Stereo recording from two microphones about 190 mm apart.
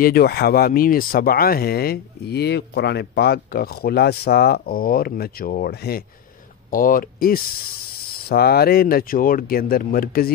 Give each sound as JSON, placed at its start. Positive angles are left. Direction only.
{"t": 0.0, "sound": "speech", "side_deg": 55}